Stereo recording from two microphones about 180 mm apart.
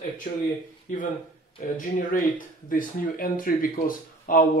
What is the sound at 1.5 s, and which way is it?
Speech, 50° left (ahead or behind).